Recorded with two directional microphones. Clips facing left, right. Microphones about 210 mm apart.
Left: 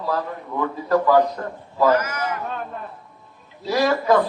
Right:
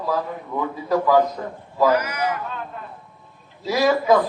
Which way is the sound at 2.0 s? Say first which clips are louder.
Right 1 dB; 45° left (ahead or behind).